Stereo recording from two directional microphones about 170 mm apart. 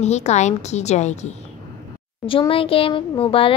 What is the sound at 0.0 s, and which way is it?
A woman's voice, 40° left (ahead or behind).